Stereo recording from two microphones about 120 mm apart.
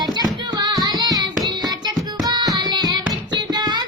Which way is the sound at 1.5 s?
35° right (ahead or behind).